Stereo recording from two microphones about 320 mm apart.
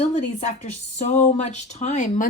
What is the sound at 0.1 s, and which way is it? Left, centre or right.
Speech, left.